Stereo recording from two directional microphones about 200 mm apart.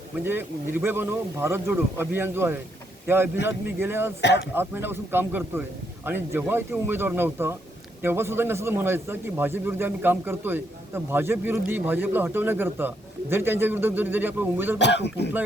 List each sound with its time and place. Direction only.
0.3 s a man's voice: 10° right (ahead or behind)
14.8 s speech: 60° left (ahead or behind)